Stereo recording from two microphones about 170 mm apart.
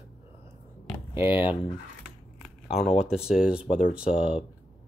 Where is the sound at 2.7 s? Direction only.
40° left (ahead or behind).